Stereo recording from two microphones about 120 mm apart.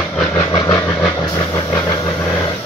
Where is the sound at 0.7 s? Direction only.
25° left (ahead or behind).